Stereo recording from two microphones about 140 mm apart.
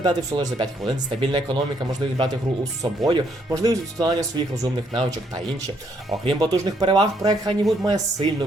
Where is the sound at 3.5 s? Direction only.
25° right (ahead or behind).